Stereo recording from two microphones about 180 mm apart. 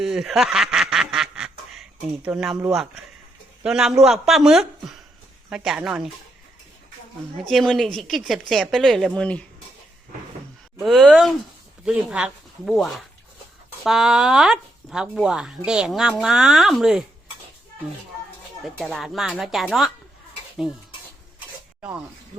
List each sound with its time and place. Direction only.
0.0 s quack: centre (ahead or behind)
2.2 s speech: 5° right (ahead or behind)
7.5 s speech: centre (ahead or behind)
10.8 s speech: centre (ahead or behind)
18.6 s speech: centre (ahead or behind)
21.8 s snake: 5° right (ahead or behind)